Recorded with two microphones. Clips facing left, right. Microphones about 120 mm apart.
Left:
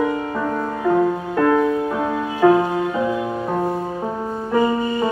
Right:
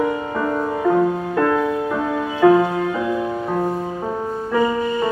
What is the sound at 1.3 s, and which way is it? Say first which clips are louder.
Music: left 2 dB; 5° left (ahead or behind).